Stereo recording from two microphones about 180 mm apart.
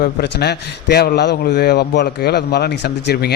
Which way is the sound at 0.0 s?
65° left (ahead or behind).